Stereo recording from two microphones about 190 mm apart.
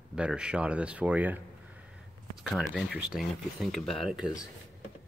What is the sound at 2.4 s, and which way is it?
Speech, centre (ahead or behind).